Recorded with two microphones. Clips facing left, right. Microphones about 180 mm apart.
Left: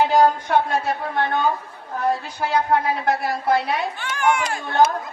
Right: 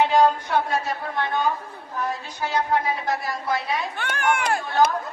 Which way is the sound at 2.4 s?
65° left (ahead or behind).